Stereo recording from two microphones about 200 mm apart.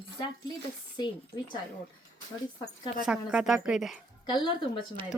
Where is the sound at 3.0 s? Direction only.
5° right (ahead or behind).